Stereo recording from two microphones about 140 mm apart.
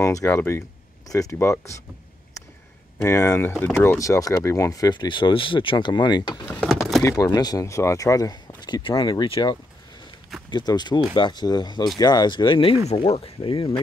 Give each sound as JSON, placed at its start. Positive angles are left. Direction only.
{"t": 0.0, "sound": "speech", "side_deg": 20}
{"t": 3.0, "sound": "speech", "side_deg": 20}
{"t": 3.5, "sound": "speech", "side_deg": 5}
{"t": 3.8, "sound": "speech", "side_deg": 20}
{"t": 6.4, "sound": "speech", "side_deg": 10}
{"t": 7.0, "sound": "speech", "side_deg": 25}